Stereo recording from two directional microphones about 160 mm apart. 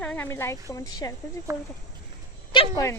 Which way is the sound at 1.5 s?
20° right (ahead or behind).